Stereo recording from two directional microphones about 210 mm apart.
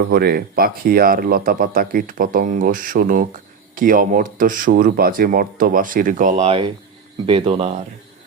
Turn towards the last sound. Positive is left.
turn(degrees=-25)  # may be behind; listen again after turning